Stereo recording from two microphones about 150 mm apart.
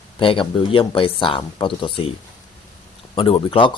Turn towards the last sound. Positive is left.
turn(degrees=35)  # may be behind; listen again after turning